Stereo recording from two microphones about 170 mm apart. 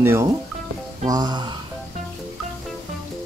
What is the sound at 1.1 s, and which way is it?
Speech, 25° right (ahead or behind).